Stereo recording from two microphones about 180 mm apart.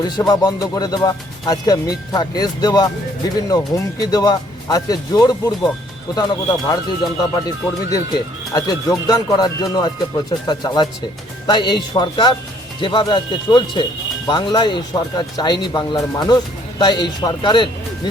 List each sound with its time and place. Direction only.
0.0 s speech: 20° left (ahead or behind)
8.5 s speech: 20° left (ahead or behind)